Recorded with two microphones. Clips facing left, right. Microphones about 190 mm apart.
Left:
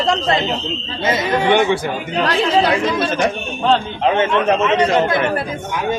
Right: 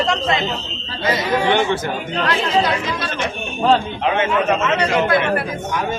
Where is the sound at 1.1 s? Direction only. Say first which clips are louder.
Left 2 dB; 20° left (ahead or behind).